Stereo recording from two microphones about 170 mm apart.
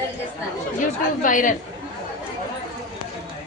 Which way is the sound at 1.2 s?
50° left (ahead or behind).